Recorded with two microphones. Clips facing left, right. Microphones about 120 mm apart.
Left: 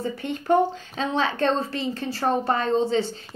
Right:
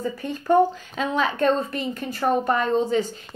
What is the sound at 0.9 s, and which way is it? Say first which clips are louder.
Speech: right 1 dB; 30° left (ahead or behind).